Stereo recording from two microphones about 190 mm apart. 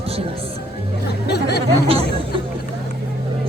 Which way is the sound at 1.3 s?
60° left (ahead or behind).